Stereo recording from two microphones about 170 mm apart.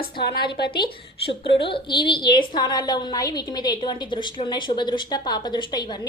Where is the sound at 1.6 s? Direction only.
30° left (ahead or behind).